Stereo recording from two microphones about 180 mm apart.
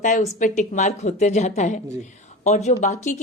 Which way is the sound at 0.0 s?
45° left (ahead or behind).